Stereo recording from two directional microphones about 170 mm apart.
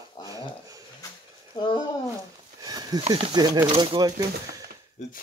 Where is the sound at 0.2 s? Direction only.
20° left (ahead or behind).